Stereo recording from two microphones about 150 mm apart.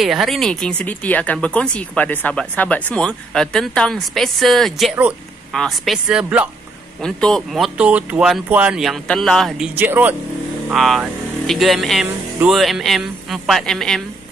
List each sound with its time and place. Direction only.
0.0 s speech: centre (ahead or behind)
7.0 s speech: 5° left (ahead or behind)
9.8 s speech: 10° right (ahead or behind)
10.7 s speech: centre (ahead or behind)